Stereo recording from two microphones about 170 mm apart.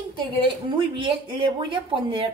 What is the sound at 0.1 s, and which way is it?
A woman's voice, 30° right (ahead or behind).